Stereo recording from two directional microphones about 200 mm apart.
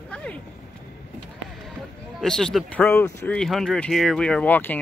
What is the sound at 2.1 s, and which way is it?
Speech, 5° left (ahead or behind).